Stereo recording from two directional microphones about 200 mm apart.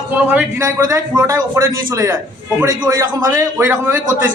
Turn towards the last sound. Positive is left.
turn(degrees=-15)  # may be behind; listen again after turning